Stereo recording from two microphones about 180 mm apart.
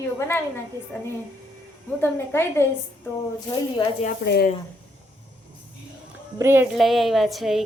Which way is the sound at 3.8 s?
35° left (ahead or behind).